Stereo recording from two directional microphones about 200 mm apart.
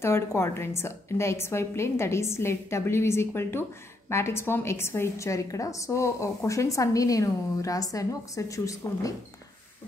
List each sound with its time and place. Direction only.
0.0 s a woman's voice: 15° left (ahead or behind)